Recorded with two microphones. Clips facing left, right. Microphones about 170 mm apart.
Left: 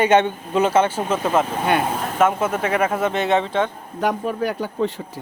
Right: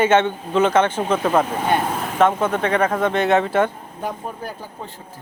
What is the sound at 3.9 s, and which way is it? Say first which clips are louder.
Speech: left 8 dB; 80° left.